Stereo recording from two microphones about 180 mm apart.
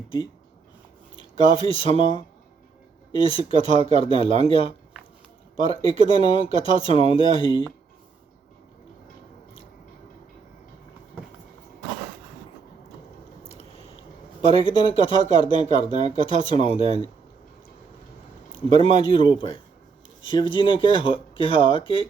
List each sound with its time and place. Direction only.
1.1 s speech: 30° left (ahead or behind)
13.5 s biting: 35° left (ahead or behind)
14.4 s speech: 30° left (ahead or behind)
18.5 s speech: 30° left (ahead or behind)